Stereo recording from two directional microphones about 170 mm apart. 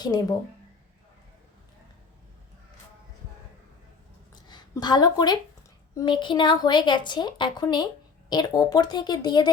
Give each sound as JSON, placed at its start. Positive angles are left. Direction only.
{"t": 0.0, "sound": "a woman's voice", "side_deg": 25}
{"t": 4.4, "sound": "a woman's voice", "side_deg": 25}